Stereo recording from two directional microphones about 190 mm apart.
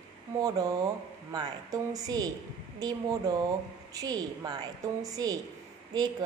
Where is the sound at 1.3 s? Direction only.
20° right (ahead or behind).